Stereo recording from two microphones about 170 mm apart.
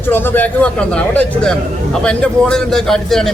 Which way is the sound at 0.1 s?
10° left (ahead or behind).